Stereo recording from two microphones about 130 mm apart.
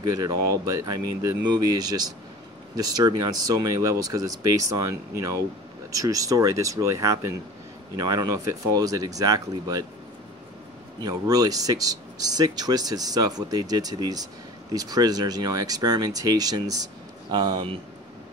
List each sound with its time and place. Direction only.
0.0 s speech: 30° right (ahead or behind)
11.0 s speech: 30° right (ahead or behind)